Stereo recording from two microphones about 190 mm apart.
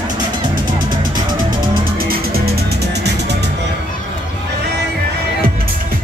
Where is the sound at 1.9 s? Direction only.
50° right (ahead or behind).